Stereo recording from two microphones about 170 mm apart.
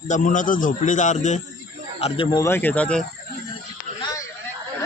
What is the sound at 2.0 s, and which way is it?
Speech, 35° left (ahead or behind).